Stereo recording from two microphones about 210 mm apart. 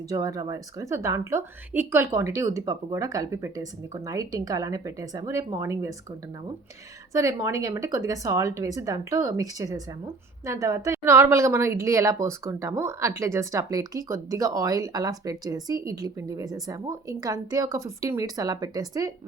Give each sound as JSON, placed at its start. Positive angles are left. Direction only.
{"t": 0.1, "sound": "a woman's voice", "side_deg": -15}
{"t": 7.1, "sound": "a woman's voice", "side_deg": -15}